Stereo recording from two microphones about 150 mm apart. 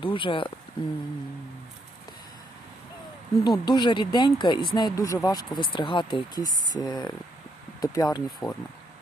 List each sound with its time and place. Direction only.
0.0 s speech: 35° left (ahead or behind)
3.4 s speech: 30° left (ahead or behind)